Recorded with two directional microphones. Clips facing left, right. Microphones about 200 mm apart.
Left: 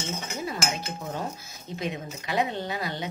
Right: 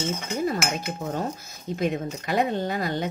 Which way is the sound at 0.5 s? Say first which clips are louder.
Right 4 dB; 50° right (ahead or behind).